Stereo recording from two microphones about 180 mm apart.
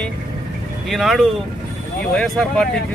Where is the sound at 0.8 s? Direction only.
Centre (ahead or behind).